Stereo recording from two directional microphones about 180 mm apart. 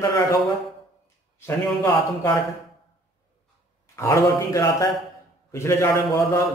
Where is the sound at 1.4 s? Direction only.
15° left (ahead or behind).